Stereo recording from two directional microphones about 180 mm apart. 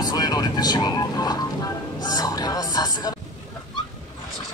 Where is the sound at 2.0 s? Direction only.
20° left (ahead or behind).